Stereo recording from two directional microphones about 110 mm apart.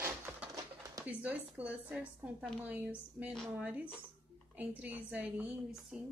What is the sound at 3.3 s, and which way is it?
Speech, 5° left (ahead or behind).